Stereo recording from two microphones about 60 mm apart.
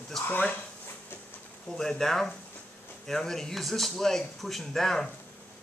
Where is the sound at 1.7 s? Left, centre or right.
Centre.